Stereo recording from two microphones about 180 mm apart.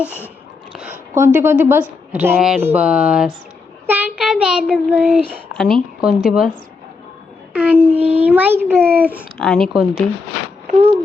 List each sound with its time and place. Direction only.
0.7 s a sound: 5° right (ahead or behind)
1.1 s speech: 15° right (ahead or behind)
3.8 s child singing: 10° right (ahead or behind)
5.5 s a woman's voice: centre (ahead or behind)
7.5 s speech: 10° right (ahead or behind)
9.4 s a woman's voice: centre (ahead or behind)
10.7 s speech: 35° right (ahead or behind)